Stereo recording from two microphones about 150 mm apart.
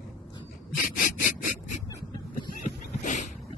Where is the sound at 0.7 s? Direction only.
60° left (ahead or behind).